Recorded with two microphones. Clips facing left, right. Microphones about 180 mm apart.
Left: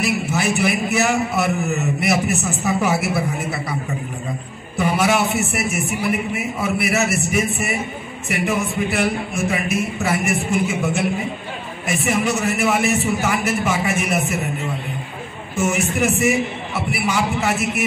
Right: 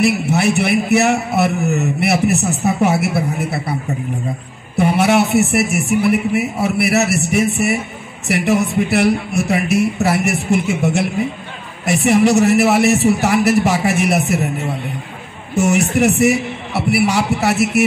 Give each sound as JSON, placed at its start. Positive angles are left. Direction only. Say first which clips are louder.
{"t": 0.0, "sound": "a man's voice", "louder": "right 6 dB", "side_deg": -65}
{"t": 4.7, "sound": "a man's voice", "louder": "right 5 dB", "side_deg": -60}
{"t": 15.5, "sound": "a man's voice", "louder": "right 6 dB", "side_deg": -70}